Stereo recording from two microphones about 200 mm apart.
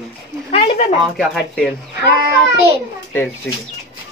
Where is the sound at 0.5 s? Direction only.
30° left (ahead or behind).